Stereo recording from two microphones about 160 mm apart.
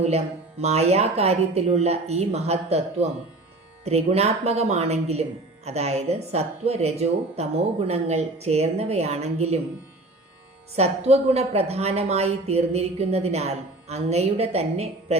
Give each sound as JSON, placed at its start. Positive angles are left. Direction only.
{"t": 0.6, "sound": "speech", "side_deg": -40}
{"t": 10.8, "sound": "speech", "side_deg": -40}